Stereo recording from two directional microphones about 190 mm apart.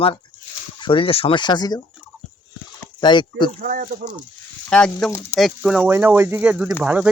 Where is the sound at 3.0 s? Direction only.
25° left (ahead or behind).